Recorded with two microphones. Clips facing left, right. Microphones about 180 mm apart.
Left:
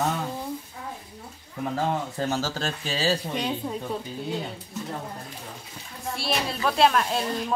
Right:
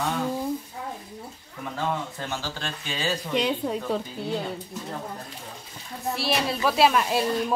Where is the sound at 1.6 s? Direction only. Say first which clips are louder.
Left 3 dB; 40° left (ahead or behind).